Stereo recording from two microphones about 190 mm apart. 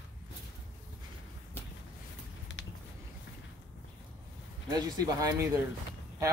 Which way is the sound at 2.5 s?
75° left (ahead or behind).